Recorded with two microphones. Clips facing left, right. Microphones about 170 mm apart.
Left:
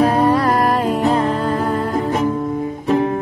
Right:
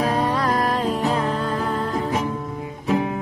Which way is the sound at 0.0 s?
55° left (ahead or behind).